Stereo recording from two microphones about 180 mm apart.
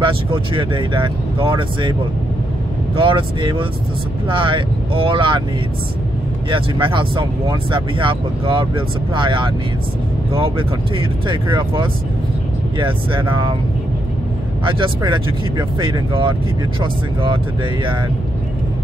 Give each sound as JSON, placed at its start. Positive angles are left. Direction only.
{"t": 0.0, "sound": "speech", "side_deg": -30}
{"t": 3.0, "sound": "speech", "side_deg": -25}
{"t": 6.5, "sound": "speech", "side_deg": -30}
{"t": 11.0, "sound": "speech", "side_deg": -30}
{"t": 14.6, "sound": "speech", "side_deg": -30}